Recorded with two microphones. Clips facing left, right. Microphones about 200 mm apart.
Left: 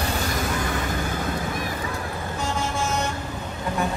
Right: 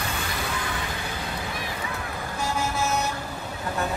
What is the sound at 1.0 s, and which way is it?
Vehicle, 50° left (ahead or behind).